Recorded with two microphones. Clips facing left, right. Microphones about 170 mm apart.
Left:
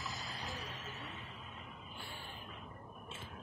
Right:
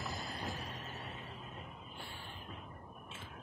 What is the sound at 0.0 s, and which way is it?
Music, 55° right (ahead or behind).